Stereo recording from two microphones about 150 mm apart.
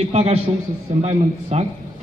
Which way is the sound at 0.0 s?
45° right (ahead or behind).